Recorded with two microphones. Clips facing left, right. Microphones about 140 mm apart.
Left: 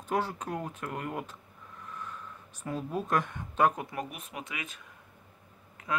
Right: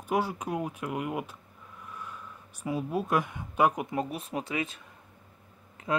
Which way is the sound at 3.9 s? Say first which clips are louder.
Right 6 dB; 30° right (ahead or behind).